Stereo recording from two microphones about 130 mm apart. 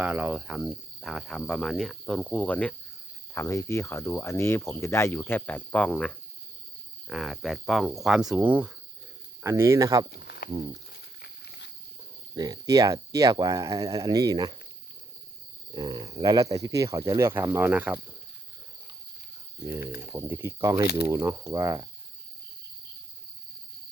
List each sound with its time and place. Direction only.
0.0 s speech: 10° right (ahead or behind); by 2.7 s 10° left (ahead or behind)
3.3 s speech: 20° left (ahead or behind); by 8.7 s 10° right (ahead or behind)
9.4 s speech: 20° right (ahead or behind)
12.3 s speech: 30° right (ahead or behind)
15.7 s speech: 30° right (ahead or behind); by 18.0 s 10° right (ahead or behind)
19.6 s speech: 20° right (ahead or behind)